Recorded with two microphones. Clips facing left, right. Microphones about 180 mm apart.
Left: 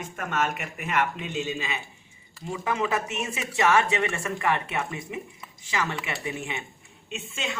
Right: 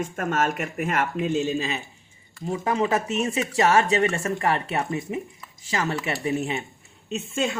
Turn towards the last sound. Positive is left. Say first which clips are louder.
# right 7 dB
turn(degrees=-45)  # may be behind; listen again after turning